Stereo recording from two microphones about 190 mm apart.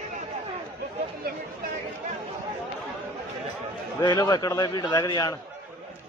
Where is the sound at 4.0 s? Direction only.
20° left (ahead or behind).